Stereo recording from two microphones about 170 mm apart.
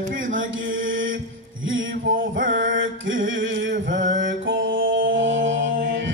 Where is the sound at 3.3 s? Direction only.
90° right.